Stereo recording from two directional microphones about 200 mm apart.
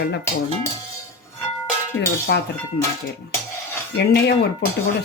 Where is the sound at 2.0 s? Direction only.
55° left (ahead or behind).